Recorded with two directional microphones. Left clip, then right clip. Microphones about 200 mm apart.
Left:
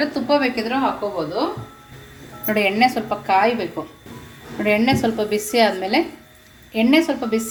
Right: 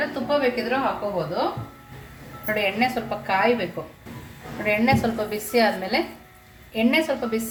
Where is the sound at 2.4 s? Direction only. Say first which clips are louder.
Left 4 dB; 45° left (ahead or behind).